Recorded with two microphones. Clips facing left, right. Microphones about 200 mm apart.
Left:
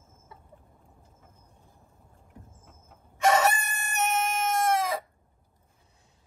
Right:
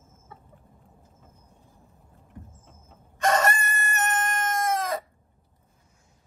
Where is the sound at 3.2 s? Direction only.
Centre (ahead or behind).